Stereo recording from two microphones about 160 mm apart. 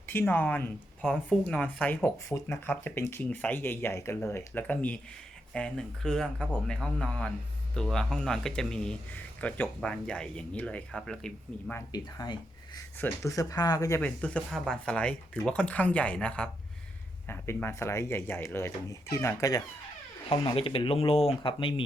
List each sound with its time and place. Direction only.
0.1 s speech: 15° left (ahead or behind)
11.9 s speech: 25° left (ahead or behind)
14.0 s speech: 5° left (ahead or behind)
20.3 s speech: 30° left (ahead or behind)